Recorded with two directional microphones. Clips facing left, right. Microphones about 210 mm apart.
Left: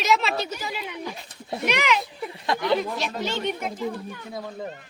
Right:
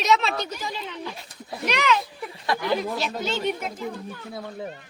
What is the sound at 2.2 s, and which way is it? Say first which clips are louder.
Speech: left 1 dB; 20° left (ahead or behind).